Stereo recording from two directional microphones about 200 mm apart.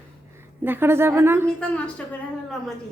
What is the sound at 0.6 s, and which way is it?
Speech, 10° right (ahead or behind).